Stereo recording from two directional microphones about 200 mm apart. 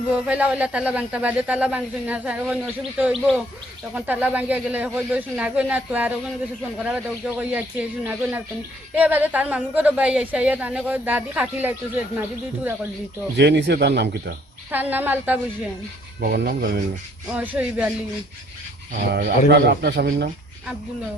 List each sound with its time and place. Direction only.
0.1 s a woman's voice: 5° right (ahead or behind)
13.3 s a man's voice: 60° right (ahead or behind)
14.7 s a woman's voice: 10° right (ahead or behind)
16.2 s filing: 50° right (ahead or behind)
17.3 s speech: 5° right (ahead or behind)
18.9 s filing: 45° right (ahead or behind)
19.5 s a man's voice: 55° right (ahead or behind)